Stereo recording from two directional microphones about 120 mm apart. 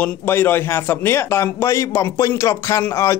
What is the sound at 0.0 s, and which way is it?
Speech, 20° left (ahead or behind).